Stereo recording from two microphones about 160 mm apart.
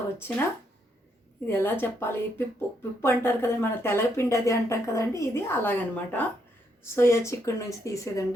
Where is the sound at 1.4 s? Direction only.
15° left (ahead or behind).